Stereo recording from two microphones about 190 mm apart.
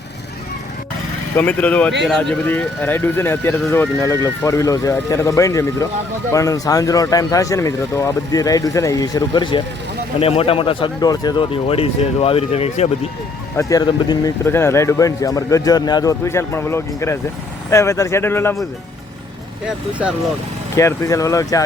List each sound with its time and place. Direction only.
1.4 s speech: 5° left (ahead or behind); by 12.9 s 35° left (ahead or behind)
13.6 s speech: 20° left (ahead or behind)
20.7 s speech: 15° left (ahead or behind)